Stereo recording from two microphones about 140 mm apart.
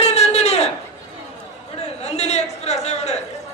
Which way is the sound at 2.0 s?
55° left (ahead or behind).